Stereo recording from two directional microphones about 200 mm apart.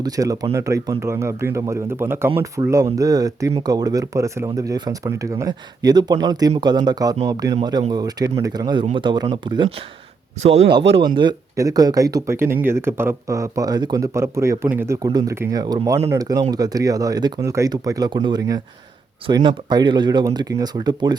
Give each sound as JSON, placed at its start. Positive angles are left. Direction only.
{"t": 0.0, "sound": "speech", "side_deg": -15}